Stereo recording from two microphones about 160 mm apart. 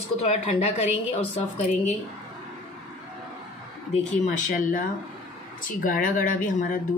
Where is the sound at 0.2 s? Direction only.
40° left (ahead or behind).